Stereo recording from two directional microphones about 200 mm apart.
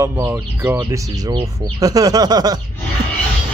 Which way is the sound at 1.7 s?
20° right (ahead or behind).